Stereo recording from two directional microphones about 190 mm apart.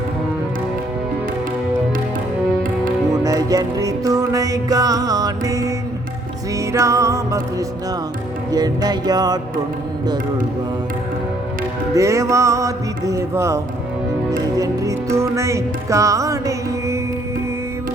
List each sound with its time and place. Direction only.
3.1 s music: 20° right (ahead or behind)
6.7 s music: 15° right (ahead or behind)
8.5 s music: 20° right (ahead or behind)
11.9 s music: 15° right (ahead or behind)